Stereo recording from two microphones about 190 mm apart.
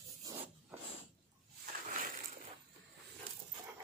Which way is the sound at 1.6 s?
45° right (ahead or behind).